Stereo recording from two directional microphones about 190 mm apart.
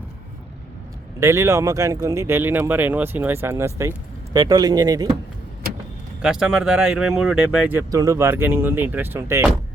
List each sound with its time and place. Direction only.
1.2 s speech: 15° right (ahead or behind)
6.2 s speech: 5° right (ahead or behind)